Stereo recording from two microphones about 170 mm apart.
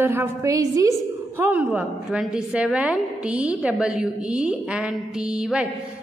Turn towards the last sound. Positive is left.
turn(degrees=-5)  # may be behind; listen again after turning